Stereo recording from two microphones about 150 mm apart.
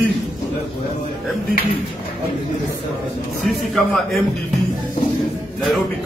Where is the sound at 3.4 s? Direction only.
Centre (ahead or behind).